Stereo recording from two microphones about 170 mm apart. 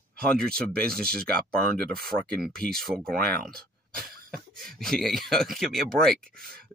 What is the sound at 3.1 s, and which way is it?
Speech, 65° right (ahead or behind).